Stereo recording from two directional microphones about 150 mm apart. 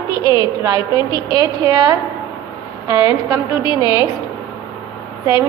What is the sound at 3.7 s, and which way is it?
Speech, 25° left (ahead or behind).